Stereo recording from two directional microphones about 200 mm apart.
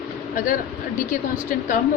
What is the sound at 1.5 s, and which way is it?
Speech, 40° left (ahead or behind).